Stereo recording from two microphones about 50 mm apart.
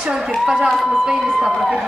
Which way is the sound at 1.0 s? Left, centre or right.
Centre.